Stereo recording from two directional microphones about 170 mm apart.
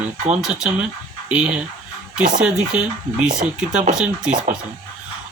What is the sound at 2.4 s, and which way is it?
Speech, 5° right (ahead or behind).